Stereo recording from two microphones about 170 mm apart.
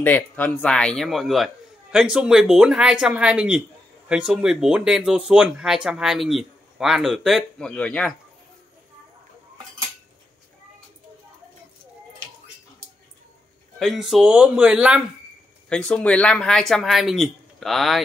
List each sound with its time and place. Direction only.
0.0 s speech: 10° left (ahead or behind)
13.7 s speech: centre (ahead or behind)
15.7 s speech: 5° left (ahead or behind)